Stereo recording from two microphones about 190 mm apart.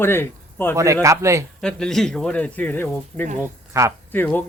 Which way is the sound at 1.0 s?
15° right (ahead or behind).